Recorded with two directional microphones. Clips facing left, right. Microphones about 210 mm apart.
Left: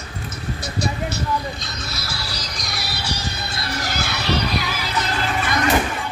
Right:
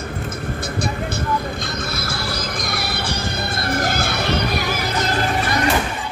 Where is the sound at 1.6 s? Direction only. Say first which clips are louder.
Right 6 dB; 50° right (ahead or behind).